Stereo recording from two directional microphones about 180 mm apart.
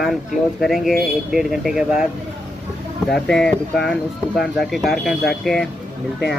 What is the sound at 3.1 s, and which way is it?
Speech, 5° left (ahead or behind).